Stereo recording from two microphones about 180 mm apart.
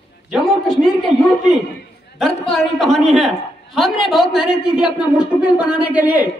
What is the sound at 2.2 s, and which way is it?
A man's voice, centre (ahead or behind).